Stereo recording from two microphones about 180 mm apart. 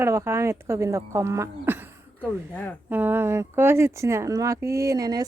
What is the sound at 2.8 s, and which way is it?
A woman's voice, 10° right (ahead or behind).